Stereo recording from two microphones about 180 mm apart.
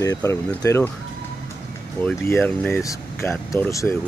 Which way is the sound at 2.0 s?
10° left (ahead or behind).